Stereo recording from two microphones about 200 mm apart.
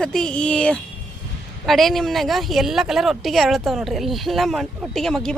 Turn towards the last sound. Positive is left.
turn(degrees=0)  # may be behind; listen again after turning